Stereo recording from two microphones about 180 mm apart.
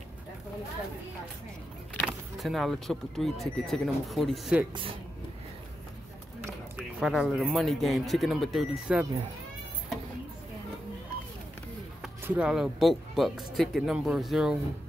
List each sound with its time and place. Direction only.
2.0 s speech: centre (ahead or behind)
6.8 s speech: centre (ahead or behind)
12.0 s speech: 5° right (ahead or behind)